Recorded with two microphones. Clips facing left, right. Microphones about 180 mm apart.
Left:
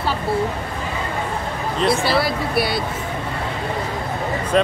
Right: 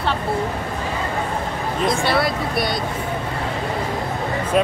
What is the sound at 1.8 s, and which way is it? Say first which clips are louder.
Speech: left 1 dB; 5° left (ahead or behind).